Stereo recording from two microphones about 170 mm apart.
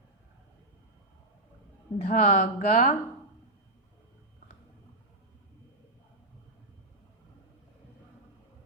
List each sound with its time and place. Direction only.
2.0 s speech: 40° left (ahead or behind)